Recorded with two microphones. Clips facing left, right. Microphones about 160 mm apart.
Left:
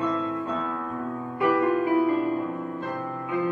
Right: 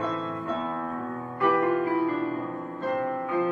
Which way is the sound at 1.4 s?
15° left (ahead or behind).